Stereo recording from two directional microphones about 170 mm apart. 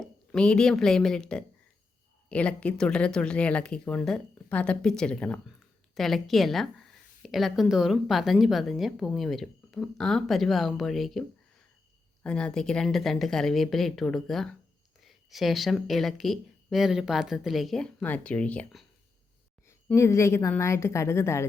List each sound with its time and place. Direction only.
0.0 s speech: 5° left (ahead or behind)
12.2 s speech: 5° left (ahead or behind)
19.6 s a woman's voice: 15° left (ahead or behind)